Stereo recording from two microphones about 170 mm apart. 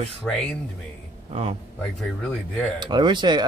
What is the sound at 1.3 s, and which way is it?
Speech, 35° right (ahead or behind).